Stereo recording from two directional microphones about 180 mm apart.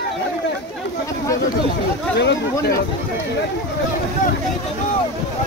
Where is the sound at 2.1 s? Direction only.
70° left (ahead or behind).